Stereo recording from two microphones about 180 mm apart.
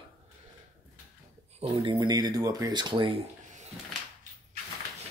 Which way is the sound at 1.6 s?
30° right (ahead or behind).